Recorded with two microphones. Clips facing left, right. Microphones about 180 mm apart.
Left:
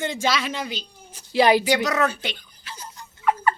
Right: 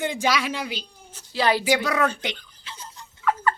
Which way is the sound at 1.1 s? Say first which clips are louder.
Left 5 dB; 15° left (ahead or behind).